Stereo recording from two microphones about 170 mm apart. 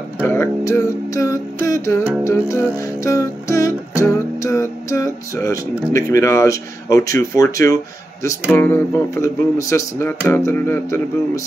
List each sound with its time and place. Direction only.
0.2 s music: 15° left (ahead or behind)
8.5 s speech: 15° left (ahead or behind)